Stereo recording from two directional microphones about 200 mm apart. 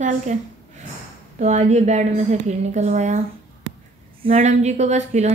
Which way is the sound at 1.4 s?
35° right (ahead or behind).